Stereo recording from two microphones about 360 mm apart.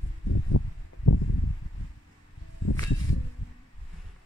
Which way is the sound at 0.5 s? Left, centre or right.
Left.